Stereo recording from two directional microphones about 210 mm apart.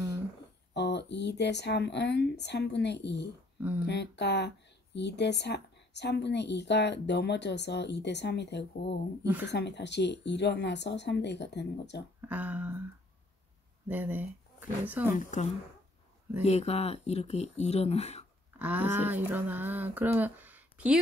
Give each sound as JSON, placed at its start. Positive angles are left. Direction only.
{"t": 0.7, "sound": "a woman's voice", "side_deg": 55}
{"t": 9.2, "sound": "speech", "side_deg": -10}
{"t": 9.5, "sound": "a woman's voice", "side_deg": 55}
{"t": 12.2, "sound": "speech", "side_deg": -10}
{"t": 13.8, "sound": "speech", "side_deg": -10}
{"t": 16.4, "sound": "speech", "side_deg": 30}
{"t": 18.6, "sound": "speech", "side_deg": -10}